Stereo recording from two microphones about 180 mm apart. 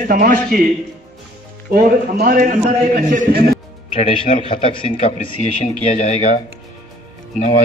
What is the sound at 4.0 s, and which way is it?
A man's voice, 30° left (ahead or behind).